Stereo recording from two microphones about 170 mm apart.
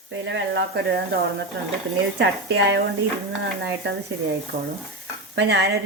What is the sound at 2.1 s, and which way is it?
Speech, 90° right.